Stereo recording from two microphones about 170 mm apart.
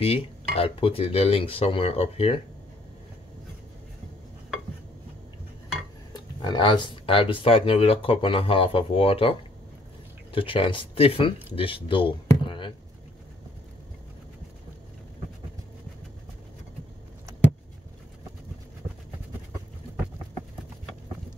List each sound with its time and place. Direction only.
0.0 s speech: 35° left (ahead or behind)
6.1 s speech: 25° left (ahead or behind)
10.3 s speech: 30° left (ahead or behind)